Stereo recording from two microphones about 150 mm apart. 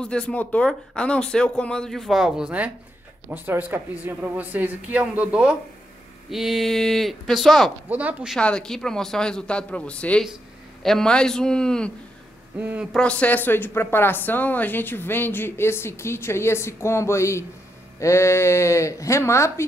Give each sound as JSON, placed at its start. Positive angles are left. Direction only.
{"t": 0.0, "sound": "speech", "side_deg": 5}
{"t": 7.9, "sound": "speech", "side_deg": -10}
{"t": 8.4, "sound": "speech", "side_deg": 5}
{"t": 12.5, "sound": "speech", "side_deg": -10}
{"t": 12.9, "sound": "a woman's voice", "side_deg": 5}